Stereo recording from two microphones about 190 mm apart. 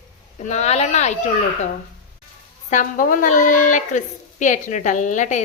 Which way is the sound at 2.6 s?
45° left (ahead or behind).